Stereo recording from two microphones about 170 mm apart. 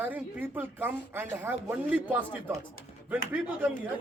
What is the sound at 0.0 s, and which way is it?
Speech, 10° right (ahead or behind).